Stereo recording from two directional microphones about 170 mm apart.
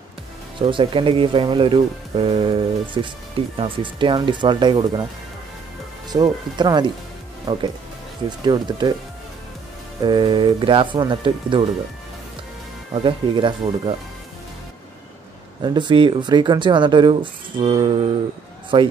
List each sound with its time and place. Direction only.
0.6 s speech: 30° right (ahead or behind)
6.0 s speech: 25° right (ahead or behind)
10.0 s speech: 25° right (ahead or behind)
12.9 s speech: 30° right (ahead or behind)
15.6 s speech: 25° right (ahead or behind)